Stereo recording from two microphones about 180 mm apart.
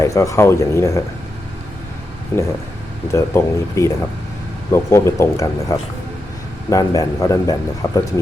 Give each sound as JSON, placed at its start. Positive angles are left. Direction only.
{"t": 0.0, "sound": "speech", "side_deg": 15}
{"t": 2.3, "sound": "a man's voice", "side_deg": 15}